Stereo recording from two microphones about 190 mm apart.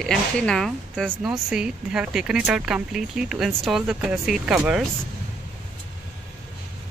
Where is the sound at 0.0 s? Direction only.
5° left (ahead or behind).